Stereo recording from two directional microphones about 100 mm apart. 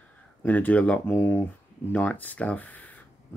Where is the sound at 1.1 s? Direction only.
20° left (ahead or behind).